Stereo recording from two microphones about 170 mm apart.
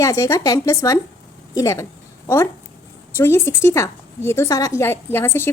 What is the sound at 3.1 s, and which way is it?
A woman's voice, 15° left (ahead or behind).